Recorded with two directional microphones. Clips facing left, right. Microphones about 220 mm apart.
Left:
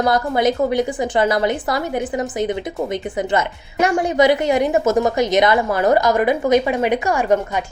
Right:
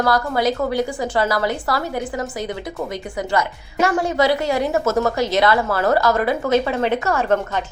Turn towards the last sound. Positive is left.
turn(degrees=15)  # may be behind; listen again after turning